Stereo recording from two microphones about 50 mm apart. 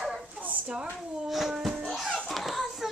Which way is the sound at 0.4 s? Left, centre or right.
Right.